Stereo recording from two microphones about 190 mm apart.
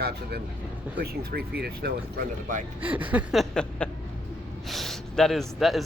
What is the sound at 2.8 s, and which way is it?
Speech, 10° right (ahead or behind).